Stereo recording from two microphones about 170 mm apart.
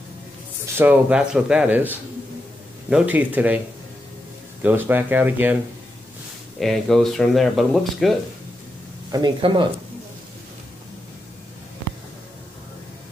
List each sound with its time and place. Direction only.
0.7 s speech: 10° right (ahead or behind)
6.6 s speech: centre (ahead or behind)
9.1 s speech: 25° right (ahead or behind)